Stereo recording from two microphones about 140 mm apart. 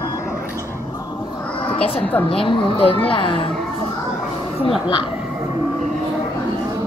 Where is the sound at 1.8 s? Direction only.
45° left (ahead or behind).